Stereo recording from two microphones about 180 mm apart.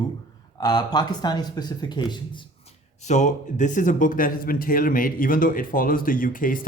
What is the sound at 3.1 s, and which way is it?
Speech, 40° left (ahead or behind).